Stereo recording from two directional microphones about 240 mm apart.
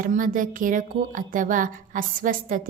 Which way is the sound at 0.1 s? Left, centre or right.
Right.